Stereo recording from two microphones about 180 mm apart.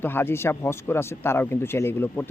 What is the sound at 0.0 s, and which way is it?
Speech, 10° left (ahead or behind).